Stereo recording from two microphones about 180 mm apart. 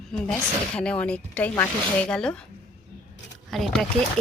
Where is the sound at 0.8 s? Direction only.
5° left (ahead or behind).